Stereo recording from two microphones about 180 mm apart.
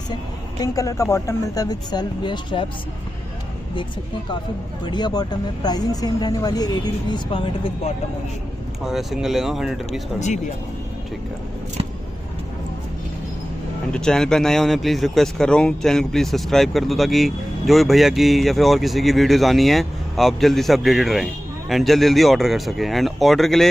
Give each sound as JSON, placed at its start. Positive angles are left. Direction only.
{"t": 0.1, "sound": "speech", "side_deg": 20}
{"t": 4.8, "sound": "speech", "side_deg": 25}
{"t": 8.8, "sound": "speech", "side_deg": 0}
{"t": 13.9, "sound": "speech", "side_deg": 5}